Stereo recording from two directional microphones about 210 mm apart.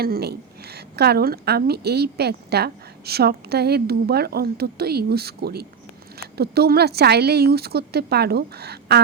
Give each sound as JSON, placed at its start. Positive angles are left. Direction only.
{"t": 0.0, "sound": "a woman's voice", "side_deg": -50}